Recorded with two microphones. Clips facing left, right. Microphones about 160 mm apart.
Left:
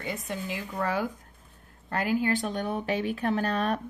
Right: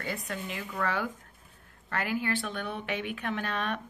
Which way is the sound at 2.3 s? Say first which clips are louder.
Left 5 dB; 40° left (ahead or behind).